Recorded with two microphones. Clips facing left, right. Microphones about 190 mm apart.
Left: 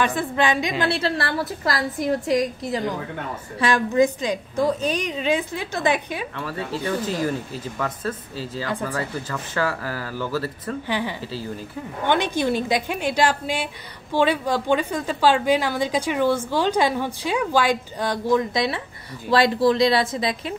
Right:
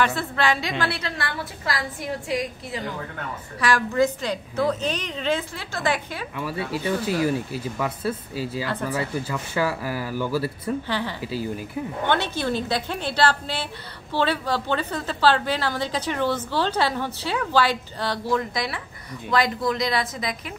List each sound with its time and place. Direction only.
0.0 s a woman's voice: 15° left (ahead or behind); by 2.8 s 40° left (ahead or behind)
3.5 s a woman's voice: 20° left (ahead or behind)
6.3 s speech: 10° right (ahead or behind)
10.9 s a woman's voice: 15° left (ahead or behind)